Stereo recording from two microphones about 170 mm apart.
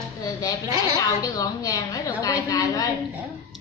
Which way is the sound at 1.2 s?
20° left (ahead or behind).